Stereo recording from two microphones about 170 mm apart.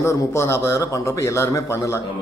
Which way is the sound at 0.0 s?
15° left (ahead or behind).